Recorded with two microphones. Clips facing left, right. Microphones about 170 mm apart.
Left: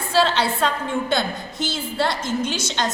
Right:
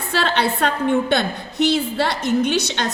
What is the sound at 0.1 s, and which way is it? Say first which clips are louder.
A woman's voice: left 1 dB; 60° right (ahead or behind).